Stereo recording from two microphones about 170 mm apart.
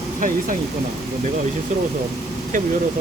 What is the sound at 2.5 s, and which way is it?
Speech, 50° right (ahead or behind).